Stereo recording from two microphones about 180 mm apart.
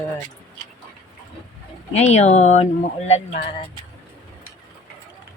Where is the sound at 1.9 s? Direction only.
40° left (ahead or behind).